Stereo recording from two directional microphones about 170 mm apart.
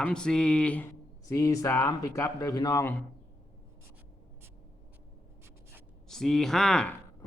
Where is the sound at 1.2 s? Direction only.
20° left (ahead or behind).